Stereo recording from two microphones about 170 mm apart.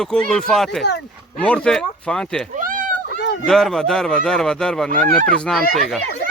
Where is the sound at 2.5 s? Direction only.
50° right (ahead or behind).